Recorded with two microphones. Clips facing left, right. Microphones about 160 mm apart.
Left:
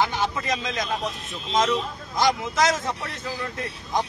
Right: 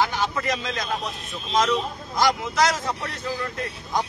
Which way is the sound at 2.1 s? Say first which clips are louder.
Even; 20° left (ahead or behind).